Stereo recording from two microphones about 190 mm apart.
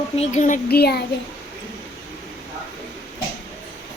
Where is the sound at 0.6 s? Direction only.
55° left (ahead or behind).